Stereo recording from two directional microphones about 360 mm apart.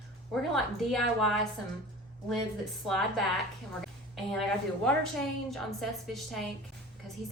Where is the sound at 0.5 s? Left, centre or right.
Centre.